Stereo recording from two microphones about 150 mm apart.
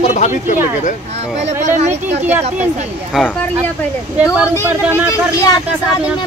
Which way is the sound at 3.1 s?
5° right (ahead or behind).